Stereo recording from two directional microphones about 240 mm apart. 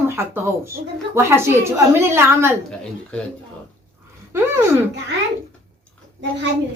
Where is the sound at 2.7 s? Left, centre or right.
Centre.